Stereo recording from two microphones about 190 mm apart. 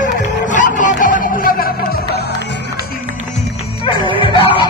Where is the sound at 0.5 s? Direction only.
40° left (ahead or behind).